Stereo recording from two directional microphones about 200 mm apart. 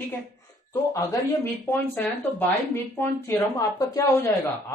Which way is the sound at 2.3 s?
10° left (ahead or behind).